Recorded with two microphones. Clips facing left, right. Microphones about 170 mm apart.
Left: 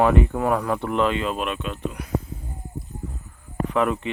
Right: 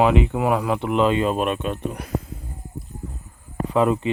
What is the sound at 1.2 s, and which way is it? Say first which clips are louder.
Speech: right 5 dB; 40° right (ahead or behind).